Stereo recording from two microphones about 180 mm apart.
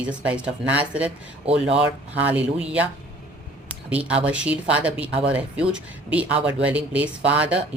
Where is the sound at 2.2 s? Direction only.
10° right (ahead or behind).